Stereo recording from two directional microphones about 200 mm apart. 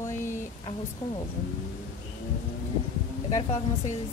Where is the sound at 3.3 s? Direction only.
35° left (ahead or behind).